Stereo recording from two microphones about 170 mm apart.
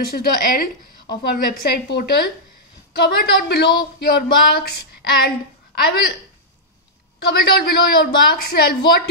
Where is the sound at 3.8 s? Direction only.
65° left (ahead or behind).